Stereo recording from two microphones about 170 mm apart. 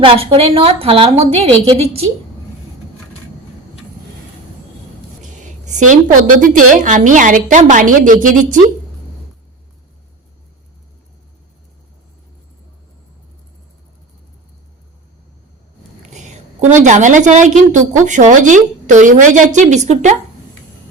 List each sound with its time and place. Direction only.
0.0 s a woman's voice: 35° right (ahead or behind)
5.4 s a woman's voice: 45° right (ahead or behind)
16.0 s a woman's voice: 45° right (ahead or behind)